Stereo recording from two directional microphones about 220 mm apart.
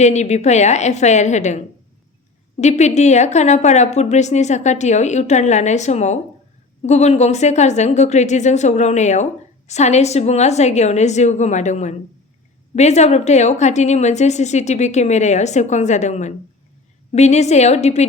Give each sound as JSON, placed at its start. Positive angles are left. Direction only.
{"t": 0.0, "sound": "a woman's voice", "side_deg": 30}